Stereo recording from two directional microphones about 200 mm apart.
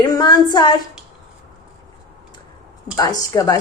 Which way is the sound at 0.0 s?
20° left (ahead or behind).